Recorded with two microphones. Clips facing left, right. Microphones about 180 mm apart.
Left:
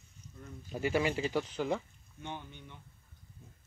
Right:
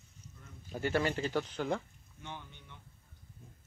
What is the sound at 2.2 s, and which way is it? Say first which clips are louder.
Speech: left 4 dB; 15° left (ahead or behind).